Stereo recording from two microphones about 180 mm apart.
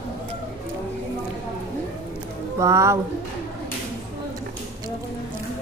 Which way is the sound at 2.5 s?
15° right (ahead or behind).